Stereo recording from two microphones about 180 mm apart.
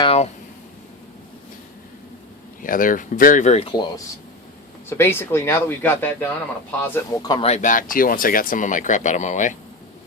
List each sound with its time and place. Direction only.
0.0 s a sound: 35° left (ahead or behind)
2.6 s speech: 50° left (ahead or behind); by 4.0 s 25° left (ahead or behind)
4.9 s speech: 15° left (ahead or behind); by 9.6 s 40° left (ahead or behind)